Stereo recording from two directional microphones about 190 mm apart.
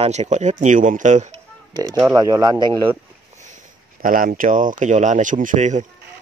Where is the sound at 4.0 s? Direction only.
45° right (ahead or behind).